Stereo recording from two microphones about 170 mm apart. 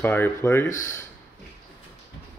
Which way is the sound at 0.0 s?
10° left (ahead or behind).